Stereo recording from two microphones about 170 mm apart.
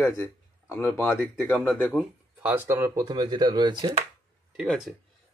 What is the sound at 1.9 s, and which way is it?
Speech, 10° right (ahead or behind).